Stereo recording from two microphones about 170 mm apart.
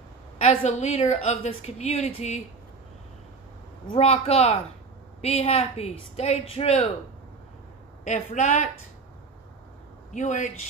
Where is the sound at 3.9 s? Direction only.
35° left (ahead or behind).